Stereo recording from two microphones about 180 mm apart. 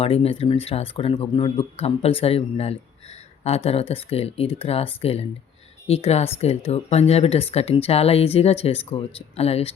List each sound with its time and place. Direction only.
0.0 s speech: 30° left (ahead or behind)